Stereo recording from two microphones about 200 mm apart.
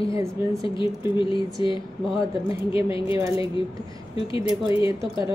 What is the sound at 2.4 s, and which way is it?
Speech, 25° left (ahead or behind).